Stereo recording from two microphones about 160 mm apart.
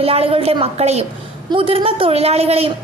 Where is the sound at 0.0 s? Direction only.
40° right (ahead or behind).